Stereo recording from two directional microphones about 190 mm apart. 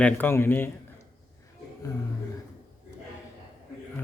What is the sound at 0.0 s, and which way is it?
Speech, 10° left (ahead or behind).